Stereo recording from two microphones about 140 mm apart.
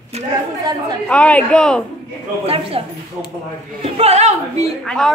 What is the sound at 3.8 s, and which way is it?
Speech, 45° right (ahead or behind).